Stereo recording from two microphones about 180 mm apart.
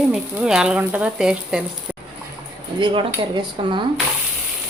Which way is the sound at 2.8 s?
25° right (ahead or behind).